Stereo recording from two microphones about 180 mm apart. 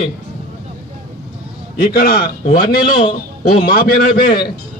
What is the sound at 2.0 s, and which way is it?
A man's voice, 60° left (ahead or behind).